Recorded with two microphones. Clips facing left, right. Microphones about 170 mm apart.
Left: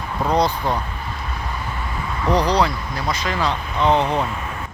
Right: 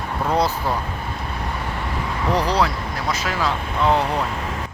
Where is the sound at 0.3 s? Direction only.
5° right (ahead or behind).